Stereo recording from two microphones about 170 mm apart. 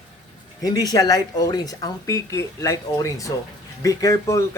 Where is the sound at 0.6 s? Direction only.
20° left (ahead or behind).